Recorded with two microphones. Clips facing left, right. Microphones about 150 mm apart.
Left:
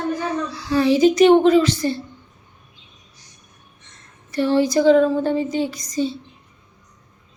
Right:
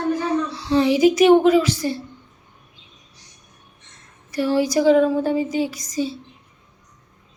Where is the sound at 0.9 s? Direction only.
10° right (ahead or behind).